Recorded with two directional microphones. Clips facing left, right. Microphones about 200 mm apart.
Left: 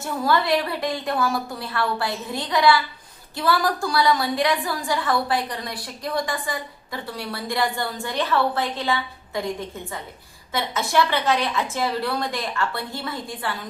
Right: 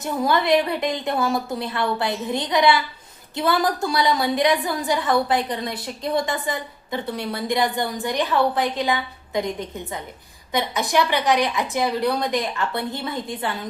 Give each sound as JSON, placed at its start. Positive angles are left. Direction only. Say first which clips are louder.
{"t": 0.0, "sound": "a woman's voice", "louder": "right 1 dB", "side_deg": -20}